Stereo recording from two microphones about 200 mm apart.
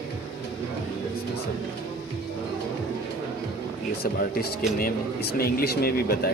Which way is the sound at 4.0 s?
50° left (ahead or behind).